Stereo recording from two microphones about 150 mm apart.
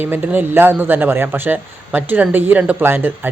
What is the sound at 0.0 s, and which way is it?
Speech, 15° right (ahead or behind).